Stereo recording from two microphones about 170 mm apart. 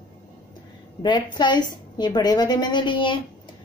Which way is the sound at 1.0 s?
25° left (ahead or behind).